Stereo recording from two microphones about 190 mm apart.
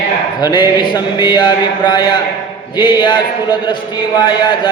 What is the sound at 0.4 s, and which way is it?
A man's voice, 25° left (ahead or behind).